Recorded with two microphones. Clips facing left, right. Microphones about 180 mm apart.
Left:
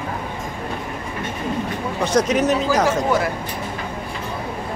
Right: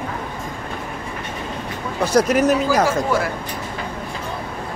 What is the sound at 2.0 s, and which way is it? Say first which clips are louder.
A man's voice: right 2 dB; 10° right (ahead or behind).